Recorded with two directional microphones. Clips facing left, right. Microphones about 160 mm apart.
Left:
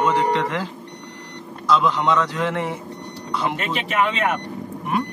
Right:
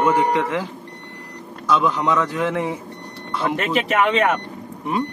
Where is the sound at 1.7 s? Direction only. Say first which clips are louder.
Even; 10° right (ahead or behind).